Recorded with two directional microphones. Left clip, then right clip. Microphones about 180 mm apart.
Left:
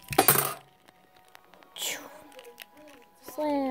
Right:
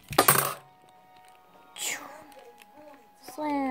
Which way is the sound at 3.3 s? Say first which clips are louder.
Left 1 dB; 5° left (ahead or behind).